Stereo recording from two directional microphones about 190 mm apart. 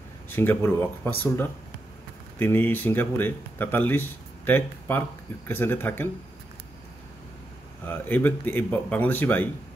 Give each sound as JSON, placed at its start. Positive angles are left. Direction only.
{"t": 0.3, "sound": "speech", "side_deg": 10}
{"t": 7.8, "sound": "speech", "side_deg": 10}